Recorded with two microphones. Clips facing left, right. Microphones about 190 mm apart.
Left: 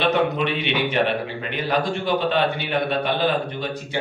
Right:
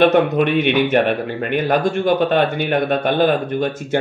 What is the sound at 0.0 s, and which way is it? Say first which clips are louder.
Speech: right 7 dB; 50° right (ahead or behind).